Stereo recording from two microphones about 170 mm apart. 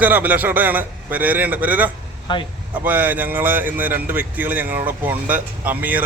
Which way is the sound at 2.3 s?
25° left (ahead or behind).